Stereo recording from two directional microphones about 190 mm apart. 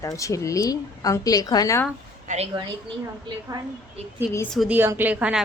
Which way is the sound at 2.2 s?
35° right (ahead or behind).